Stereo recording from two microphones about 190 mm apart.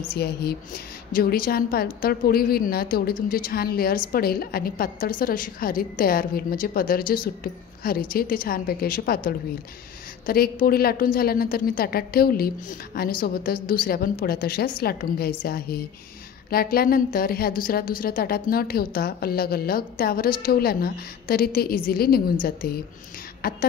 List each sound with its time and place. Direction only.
0.1 s a woman's voice: 55° left (ahead or behind)